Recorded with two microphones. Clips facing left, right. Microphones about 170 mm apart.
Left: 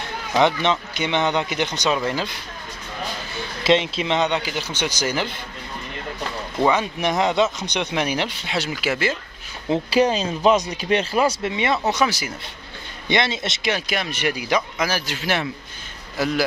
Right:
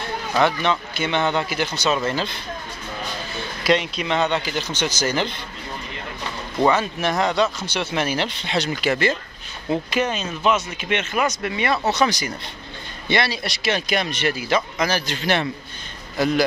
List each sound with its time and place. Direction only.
0.3 s speech: 20° left (ahead or behind)
3.6 s speech: 25° left (ahead or behind); by 5.3 s 10° left (ahead or behind)
6.6 s speech: 15° left (ahead or behind)
9.7 s speech: 30° left (ahead or behind); by 12.3 s 10° left (ahead or behind)
13.1 s speech: 20° left (ahead or behind)
13.7 s speech: 5° left (ahead or behind)
14.2 s speech: 15° left (ahead or behind)